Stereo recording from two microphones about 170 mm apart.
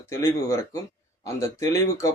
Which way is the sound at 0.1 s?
15° left (ahead or behind).